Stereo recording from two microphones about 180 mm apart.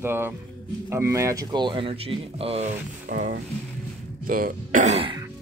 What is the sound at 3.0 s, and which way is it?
Speech, 50° right (ahead or behind).